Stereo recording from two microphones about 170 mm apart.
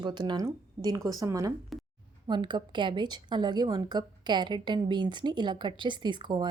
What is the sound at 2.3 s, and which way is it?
A woman's voice, 30° right (ahead or behind).